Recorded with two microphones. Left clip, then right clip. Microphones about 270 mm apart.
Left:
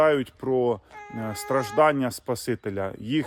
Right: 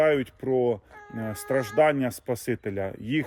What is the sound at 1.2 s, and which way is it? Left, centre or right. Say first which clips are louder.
Speech: left 1 dB; centre.